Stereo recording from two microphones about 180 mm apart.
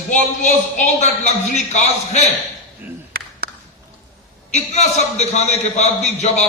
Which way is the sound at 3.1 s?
60° right (ahead or behind).